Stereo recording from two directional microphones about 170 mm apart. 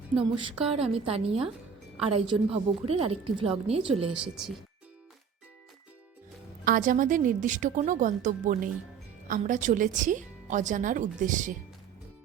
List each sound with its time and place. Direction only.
0.6 s a woman's voice: 35° right (ahead or behind)
6.7 s speech: 50° right (ahead or behind)